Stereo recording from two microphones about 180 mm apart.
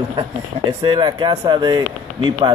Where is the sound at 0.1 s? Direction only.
25° right (ahead or behind).